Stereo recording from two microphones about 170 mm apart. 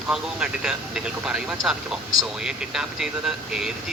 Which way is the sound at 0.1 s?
5° right (ahead or behind).